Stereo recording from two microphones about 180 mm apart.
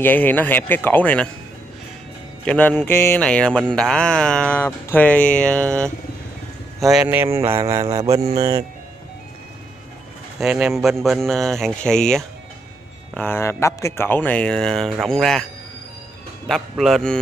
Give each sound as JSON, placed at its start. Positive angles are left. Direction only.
{"t": 0.0, "sound": "speech", "side_deg": 10}
{"t": 2.4, "sound": "speech", "side_deg": 10}
{"t": 6.9, "sound": "speech", "side_deg": -5}
{"t": 7.9, "sound": "mantra", "side_deg": -20}
{"t": 10.4, "sound": "speech", "side_deg": -5}
{"t": 16.4, "sound": "speech", "side_deg": 0}